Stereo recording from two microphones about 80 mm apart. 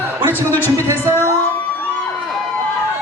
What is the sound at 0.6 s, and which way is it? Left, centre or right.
Speech, right.